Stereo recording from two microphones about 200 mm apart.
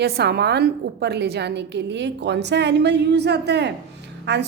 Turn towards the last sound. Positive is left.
turn(degrees=-60)  # may be behind; listen again after turning